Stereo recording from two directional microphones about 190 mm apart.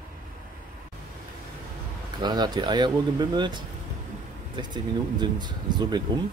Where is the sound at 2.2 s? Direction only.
20° right (ahead or behind).